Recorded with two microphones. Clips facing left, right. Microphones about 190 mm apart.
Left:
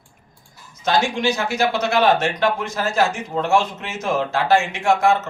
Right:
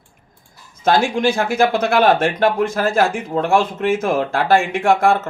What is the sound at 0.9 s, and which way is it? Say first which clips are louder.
Speech: right 4 dB; 55° right (ahead or behind).